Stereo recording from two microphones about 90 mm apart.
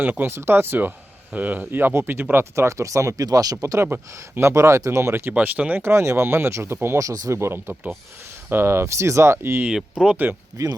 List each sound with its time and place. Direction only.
0.0 s speech: 20° right (ahead or behind)
5.3 s speech: 15° right (ahead or behind)
9.6 s speech: 10° right (ahead or behind)
10.5 s speech: 35° right (ahead or behind)